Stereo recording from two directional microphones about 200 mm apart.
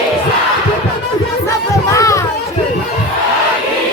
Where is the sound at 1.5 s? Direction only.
15° left (ahead or behind).